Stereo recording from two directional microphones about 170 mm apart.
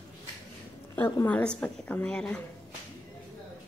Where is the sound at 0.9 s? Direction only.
10° left (ahead or behind).